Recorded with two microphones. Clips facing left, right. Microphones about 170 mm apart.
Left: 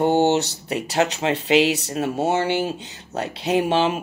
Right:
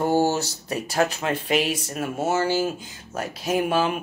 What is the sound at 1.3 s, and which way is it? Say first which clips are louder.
Speech: left 5 dB; 80° left.